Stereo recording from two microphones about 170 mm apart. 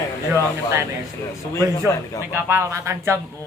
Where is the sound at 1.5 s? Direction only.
15° left (ahead or behind).